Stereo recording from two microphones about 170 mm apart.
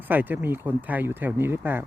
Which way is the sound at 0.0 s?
10° right (ahead or behind).